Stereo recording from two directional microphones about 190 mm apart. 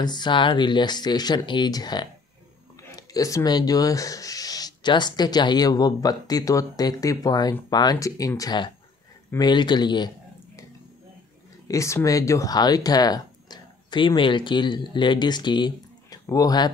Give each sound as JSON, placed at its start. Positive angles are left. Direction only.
{"t": 0.0, "sound": "speech", "side_deg": 25}
{"t": 11.6, "sound": "speech", "side_deg": 15}